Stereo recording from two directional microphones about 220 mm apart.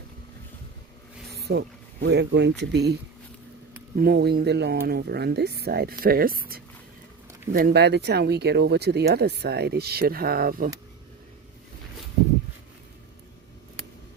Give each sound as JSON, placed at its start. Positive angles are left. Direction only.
{"t": 1.3, "sound": "speech", "side_deg": -45}
{"t": 3.9, "sound": "speech", "side_deg": -45}